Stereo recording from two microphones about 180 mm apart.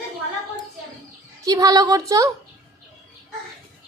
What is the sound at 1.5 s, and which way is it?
Speech, 20° right (ahead or behind).